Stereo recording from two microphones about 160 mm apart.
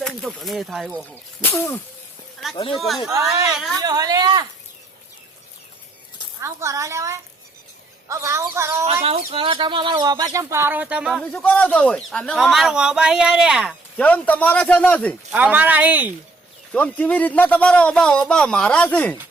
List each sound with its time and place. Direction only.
0.0 s speech: centre (ahead or behind)
1.1 s a man's voice: 15° left (ahead or behind)
2.7 s speech: centre (ahead or behind)
3.8 s speech: 25° right (ahead or behind)
6.4 s speech: 20° right (ahead or behind)
8.8 s speech: 40° right (ahead or behind); by 14.0 s 5° right (ahead or behind)
14.0 s a man's voice: 10° left (ahead or behind)
15.3 s speech: 10° right (ahead or behind)
16.7 s a man's voice: 10° left (ahead or behind)